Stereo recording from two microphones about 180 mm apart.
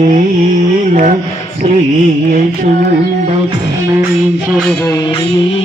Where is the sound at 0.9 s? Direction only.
45° right (ahead or behind).